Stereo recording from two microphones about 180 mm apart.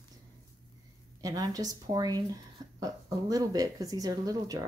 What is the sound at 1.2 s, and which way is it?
Speech, 20° right (ahead or behind).